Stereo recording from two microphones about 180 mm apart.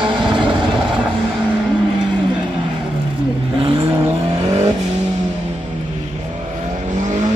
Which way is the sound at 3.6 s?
30° right (ahead or behind).